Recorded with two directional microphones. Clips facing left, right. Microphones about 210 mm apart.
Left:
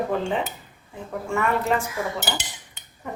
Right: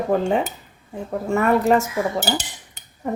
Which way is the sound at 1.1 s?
40° right (ahead or behind).